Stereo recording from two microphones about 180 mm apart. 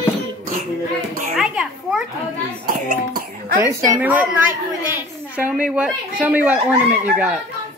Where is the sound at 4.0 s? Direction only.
10° right (ahead or behind).